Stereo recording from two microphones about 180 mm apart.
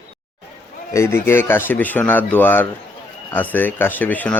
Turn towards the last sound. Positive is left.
turn(degrees=10)  # may be behind; listen again after turning